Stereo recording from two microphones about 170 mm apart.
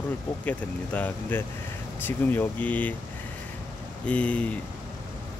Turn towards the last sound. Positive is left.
turn(degrees=10)  # may be behind; listen again after turning